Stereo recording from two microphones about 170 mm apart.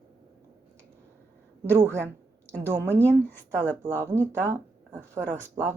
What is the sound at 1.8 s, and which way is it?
Speech, 15° right (ahead or behind).